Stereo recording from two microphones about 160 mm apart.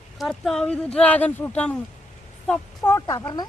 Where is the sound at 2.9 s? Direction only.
20° left (ahead or behind).